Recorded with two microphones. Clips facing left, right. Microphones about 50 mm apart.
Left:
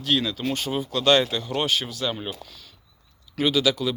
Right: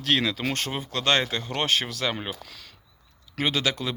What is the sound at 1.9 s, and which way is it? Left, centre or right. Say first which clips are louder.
Speech: even; right.